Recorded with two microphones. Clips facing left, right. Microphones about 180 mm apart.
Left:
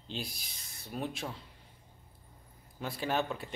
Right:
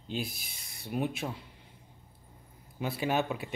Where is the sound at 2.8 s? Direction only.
5° right (ahead or behind).